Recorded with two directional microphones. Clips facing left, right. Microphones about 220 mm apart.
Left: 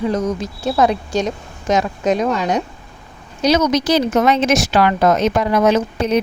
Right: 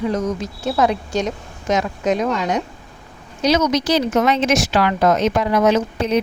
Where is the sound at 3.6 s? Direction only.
45° left (ahead or behind).